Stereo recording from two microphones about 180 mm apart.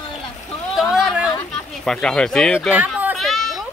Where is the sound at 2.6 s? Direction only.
10° right (ahead or behind).